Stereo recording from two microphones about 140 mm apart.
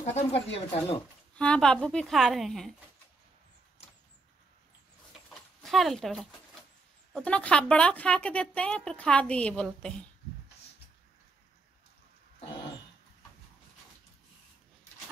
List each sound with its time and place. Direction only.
0.0 s speech: 50° left (ahead or behind)
1.3 s a woman's voice: 10° left (ahead or behind)
5.6 s speech: centre (ahead or behind)